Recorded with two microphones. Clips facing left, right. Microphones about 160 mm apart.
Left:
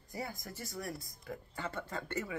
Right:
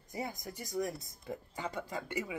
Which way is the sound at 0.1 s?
20° right (ahead or behind).